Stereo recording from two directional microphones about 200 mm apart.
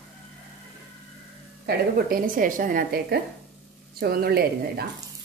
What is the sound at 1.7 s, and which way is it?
A woman's voice, 50° right (ahead or behind).